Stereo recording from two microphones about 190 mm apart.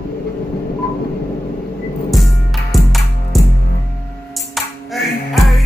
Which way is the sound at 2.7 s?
Centre (ahead or behind).